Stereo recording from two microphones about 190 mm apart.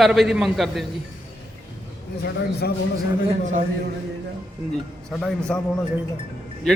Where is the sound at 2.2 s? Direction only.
60° left (ahead or behind).